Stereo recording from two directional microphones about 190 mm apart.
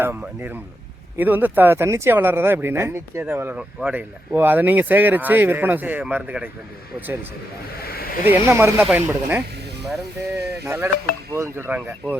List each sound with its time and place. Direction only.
0.0 s speech: 10° right (ahead or behind)
7.7 s a sound: 55° left (ahead or behind)
8.2 s speech: 10° right (ahead or behind)
10.7 s speech: 15° right (ahead or behind)